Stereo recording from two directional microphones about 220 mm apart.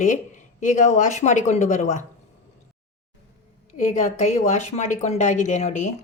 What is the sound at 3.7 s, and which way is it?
A woman's voice, 35° left (ahead or behind).